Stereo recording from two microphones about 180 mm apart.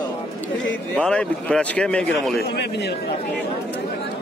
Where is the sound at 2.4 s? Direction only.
70° left (ahead or behind).